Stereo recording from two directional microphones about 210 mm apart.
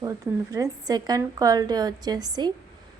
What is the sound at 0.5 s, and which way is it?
A woman's voice, 15° right (ahead or behind).